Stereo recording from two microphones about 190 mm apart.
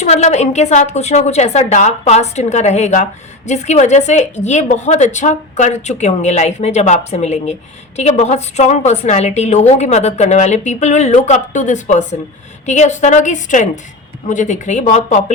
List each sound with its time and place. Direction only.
0.0 s a woman's voice: 35° left (ahead or behind)